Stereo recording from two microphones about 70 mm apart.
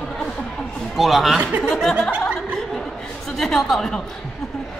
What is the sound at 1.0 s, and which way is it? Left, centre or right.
Speech, centre.